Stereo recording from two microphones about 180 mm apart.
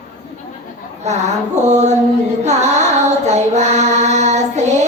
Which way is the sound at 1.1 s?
40° right (ahead or behind).